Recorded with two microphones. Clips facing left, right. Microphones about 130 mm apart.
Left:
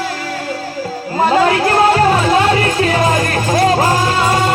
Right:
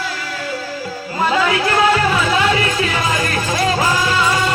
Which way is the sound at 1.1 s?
45° left (ahead or behind).